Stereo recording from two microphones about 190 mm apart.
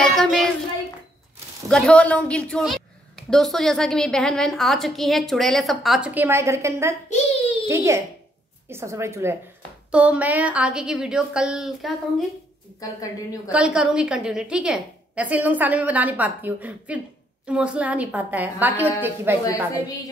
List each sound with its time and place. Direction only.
0.0 s child singing: 5° left (ahead or behind)
1.7 s a woman's voice: 5° left (ahead or behind)
12.8 s a woman's voice: 15° left (ahead or behind)
13.5 s a woman's voice: 5° right (ahead or behind)